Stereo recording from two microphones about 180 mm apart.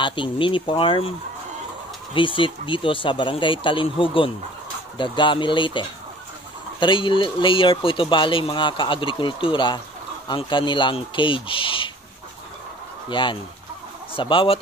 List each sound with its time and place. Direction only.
0.0 s speech: 25° left (ahead or behind)
2.1 s speech: 30° left (ahead or behind)
13.1 s speech: 25° left (ahead or behind)